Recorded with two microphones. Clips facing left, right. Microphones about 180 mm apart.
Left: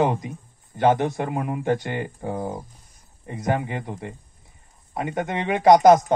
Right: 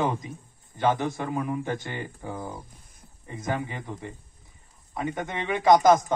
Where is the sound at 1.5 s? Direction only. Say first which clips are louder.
Left 6 dB; 55° left (ahead or behind).